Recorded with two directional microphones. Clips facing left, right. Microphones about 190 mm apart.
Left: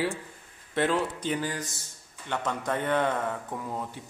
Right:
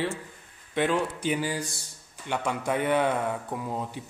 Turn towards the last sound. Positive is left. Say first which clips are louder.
# right 2 dB
turn(degrees=-15)  # may be behind; listen again after turning